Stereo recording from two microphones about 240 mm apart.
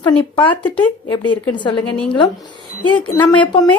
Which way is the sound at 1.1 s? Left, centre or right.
Centre.